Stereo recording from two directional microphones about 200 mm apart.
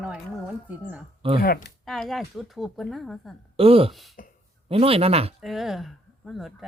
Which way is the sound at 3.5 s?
30° right (ahead or behind).